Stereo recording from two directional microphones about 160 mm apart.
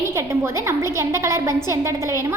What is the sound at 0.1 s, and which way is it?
A woman's voice, 15° right (ahead or behind).